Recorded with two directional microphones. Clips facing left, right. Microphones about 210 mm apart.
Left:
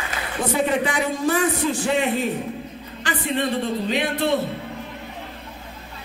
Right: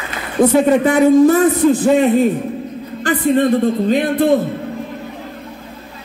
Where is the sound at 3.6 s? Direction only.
50° right (ahead or behind).